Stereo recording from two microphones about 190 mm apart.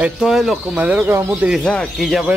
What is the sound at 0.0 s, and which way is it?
Speech, centre (ahead or behind).